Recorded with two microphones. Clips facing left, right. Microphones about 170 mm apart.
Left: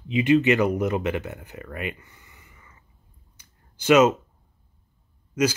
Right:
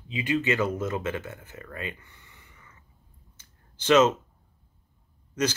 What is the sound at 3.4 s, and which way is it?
Clicking, 10° left (ahead or behind).